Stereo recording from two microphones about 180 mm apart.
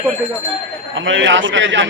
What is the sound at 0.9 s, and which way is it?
Speech, 90° right.